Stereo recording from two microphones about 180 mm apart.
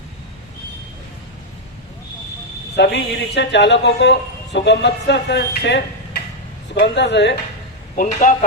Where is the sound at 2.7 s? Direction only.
70° left (ahead or behind).